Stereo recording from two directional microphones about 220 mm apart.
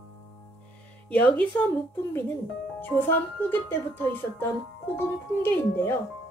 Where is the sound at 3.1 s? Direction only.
10° left (ahead or behind).